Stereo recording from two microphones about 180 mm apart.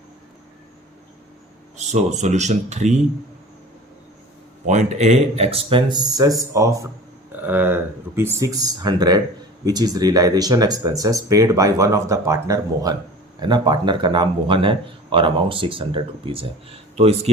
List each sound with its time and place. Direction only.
1.7 s speech: 40° right (ahead or behind)
4.6 s speech: 40° right (ahead or behind)